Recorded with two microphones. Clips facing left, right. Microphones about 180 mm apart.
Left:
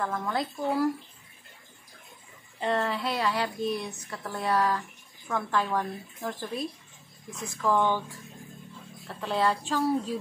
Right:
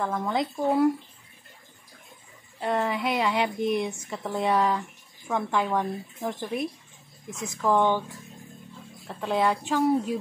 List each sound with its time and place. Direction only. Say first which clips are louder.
0.0 s speech: right 3 dB; 15° right (ahead or behind)
2.6 s speech: right 2 dB; 10° right (ahead or behind)
9.0 s speech: right 2 dB; 15° right (ahead or behind)